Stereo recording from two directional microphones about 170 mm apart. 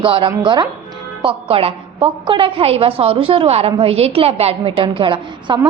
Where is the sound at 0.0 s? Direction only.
30° right (ahead or behind).